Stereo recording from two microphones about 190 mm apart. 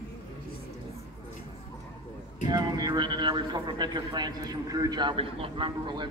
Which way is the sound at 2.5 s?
20° right (ahead or behind).